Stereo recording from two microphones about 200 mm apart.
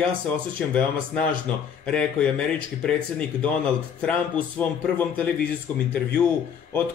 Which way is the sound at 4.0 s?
5° left (ahead or behind).